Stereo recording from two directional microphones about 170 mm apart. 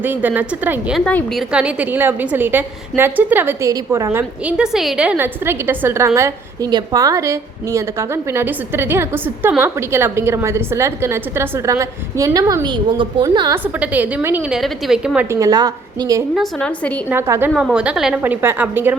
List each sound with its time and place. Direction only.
0.0 s a woman's voice: 10° right (ahead or behind)
1.0 s a woman's voice: 5° left (ahead or behind); by 13.6 s 20° right (ahead or behind)
13.7 s a woman's voice: 10° right (ahead or behind)
16.3 s a woman's voice: centre (ahead or behind)
17.1 s a woman's voice: 15° right (ahead or behind)